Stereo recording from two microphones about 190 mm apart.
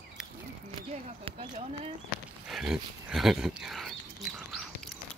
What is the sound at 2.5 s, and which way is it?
Speech, 5° right (ahead or behind).